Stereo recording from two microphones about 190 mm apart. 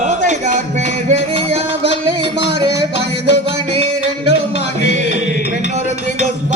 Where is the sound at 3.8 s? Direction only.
65° left (ahead or behind).